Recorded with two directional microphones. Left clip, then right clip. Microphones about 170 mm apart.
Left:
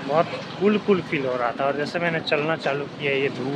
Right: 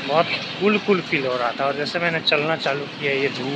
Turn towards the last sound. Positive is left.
turn(degrees=5)  # may be behind; listen again after turning